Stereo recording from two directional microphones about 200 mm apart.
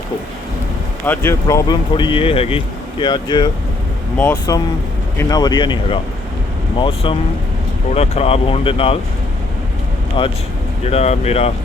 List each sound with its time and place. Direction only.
1.0 s speech: 10° left (ahead or behind); by 9.0 s 30° left (ahead or behind)
10.2 s speech: 25° left (ahead or behind)